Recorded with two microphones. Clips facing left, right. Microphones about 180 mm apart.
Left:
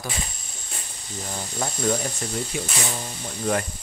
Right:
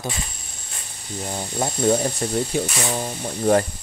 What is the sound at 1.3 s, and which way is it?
Speech, 25° right (ahead or behind).